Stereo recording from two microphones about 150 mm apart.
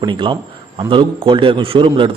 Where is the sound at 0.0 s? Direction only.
35° right (ahead or behind).